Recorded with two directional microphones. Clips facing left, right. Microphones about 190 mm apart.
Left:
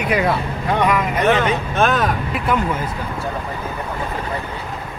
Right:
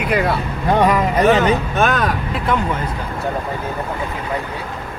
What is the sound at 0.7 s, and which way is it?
Speech, 35° right (ahead or behind).